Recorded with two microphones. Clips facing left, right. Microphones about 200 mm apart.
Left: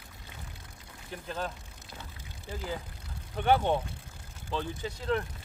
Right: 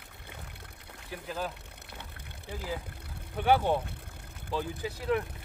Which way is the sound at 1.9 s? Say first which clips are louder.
Left 1 dB; 60° right (ahead or behind).